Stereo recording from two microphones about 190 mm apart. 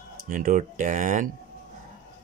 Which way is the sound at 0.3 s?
45° right (ahead or behind).